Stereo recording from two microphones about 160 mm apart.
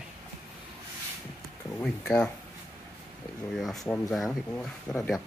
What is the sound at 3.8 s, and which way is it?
Speech, 10° left (ahead or behind).